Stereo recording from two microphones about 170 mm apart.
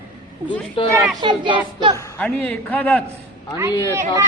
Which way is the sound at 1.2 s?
30° right (ahead or behind).